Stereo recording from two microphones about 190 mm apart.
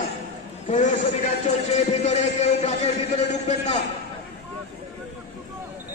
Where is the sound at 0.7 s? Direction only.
40° left (ahead or behind).